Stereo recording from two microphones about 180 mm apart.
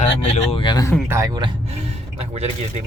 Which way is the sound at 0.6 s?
20° left (ahead or behind).